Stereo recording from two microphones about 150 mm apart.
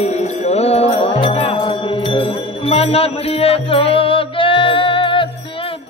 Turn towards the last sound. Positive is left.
turn(degrees=35)  # may be behind; listen again after turning